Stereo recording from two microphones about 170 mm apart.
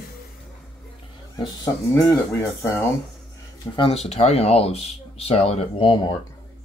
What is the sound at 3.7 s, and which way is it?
Speech, 35° left (ahead or behind).